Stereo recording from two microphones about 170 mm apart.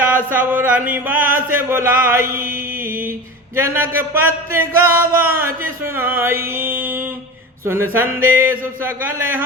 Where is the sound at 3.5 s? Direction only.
15° right (ahead or behind).